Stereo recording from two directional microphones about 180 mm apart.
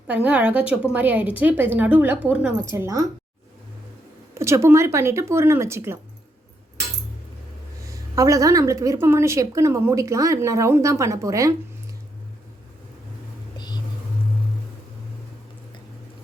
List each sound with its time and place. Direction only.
0.1 s a woman's voice: 5° right (ahead or behind)
4.4 s a woman's voice: 15° right (ahead or behind)
7.9 s a woman's voice: 20° right (ahead or behind)
13.6 s whispering: 25° left (ahead or behind)